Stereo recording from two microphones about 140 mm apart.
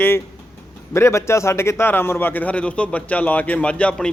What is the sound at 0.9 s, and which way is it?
A man's voice, 20° left (ahead or behind).